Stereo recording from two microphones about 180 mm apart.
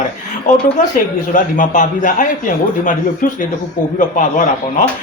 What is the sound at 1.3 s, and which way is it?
Speech, 45° left (ahead or behind).